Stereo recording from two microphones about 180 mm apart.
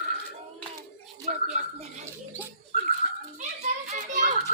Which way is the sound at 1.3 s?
45° right (ahead or behind).